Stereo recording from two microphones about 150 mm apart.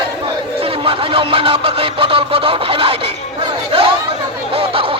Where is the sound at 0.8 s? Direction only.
35° right (ahead or behind).